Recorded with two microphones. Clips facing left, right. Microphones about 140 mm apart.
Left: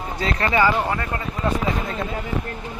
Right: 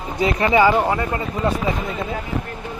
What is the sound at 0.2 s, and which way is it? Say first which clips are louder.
Speech: right 4 dB; 15° right (ahead or behind).